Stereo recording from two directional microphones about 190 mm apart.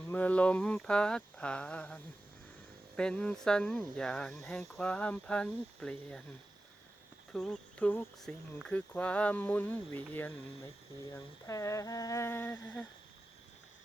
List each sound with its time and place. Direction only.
0.0 s speech: 10° left (ahead or behind)
7.3 s speech: 5° left (ahead or behind)